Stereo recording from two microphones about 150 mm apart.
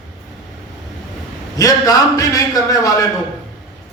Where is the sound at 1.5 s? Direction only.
25° left (ahead or behind).